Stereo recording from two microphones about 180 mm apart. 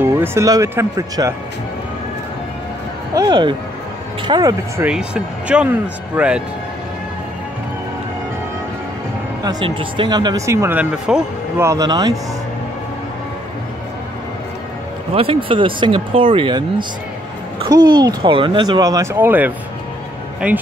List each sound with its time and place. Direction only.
0.2 s speech: 15° right (ahead or behind)
3.2 s speech: 25° right (ahead or behind)
4.8 s speech: 5° right (ahead or behind)
9.4 s speech: 25° right (ahead or behind); by 11.6 s 5° right (ahead or behind)
11.6 s speech: 20° right (ahead or behind)
15.1 s speech: 30° right (ahead or behind); by 20.6 s 5° right (ahead or behind)